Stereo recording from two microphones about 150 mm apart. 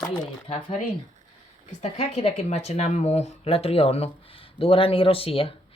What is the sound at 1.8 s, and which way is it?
Speech, 45° left (ahead or behind).